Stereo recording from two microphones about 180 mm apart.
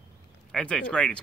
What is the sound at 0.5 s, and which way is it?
Speech, 5° left (ahead or behind).